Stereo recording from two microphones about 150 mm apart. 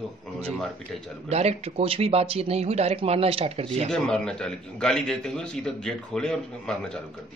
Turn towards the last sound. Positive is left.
turn(degrees=5)  # may be behind; listen again after turning